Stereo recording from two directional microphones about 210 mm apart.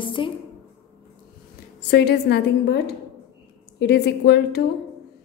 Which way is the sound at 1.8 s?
50° left (ahead or behind).